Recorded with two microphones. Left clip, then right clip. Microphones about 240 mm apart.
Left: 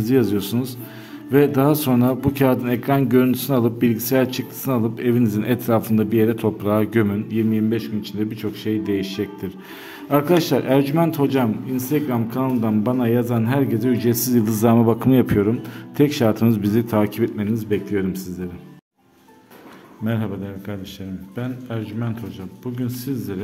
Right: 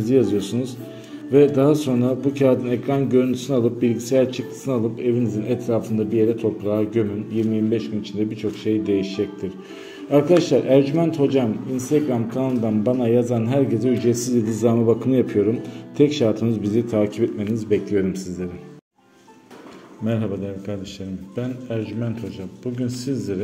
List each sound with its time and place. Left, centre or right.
0.0 s a man's voice: left
20.1 s speech: centre